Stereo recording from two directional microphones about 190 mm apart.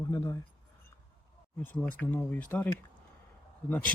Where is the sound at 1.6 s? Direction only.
10° left (ahead or behind).